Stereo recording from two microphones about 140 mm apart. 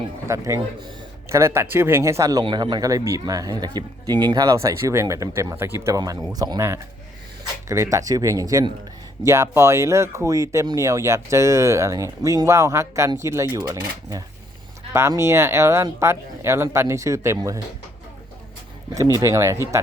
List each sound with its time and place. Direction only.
0.3 s speech: 25° right (ahead or behind)
2.4 s speech: 35° right (ahead or behind)
14.9 s speech: 20° right (ahead or behind)
19.2 s speech: 20° right (ahead or behind)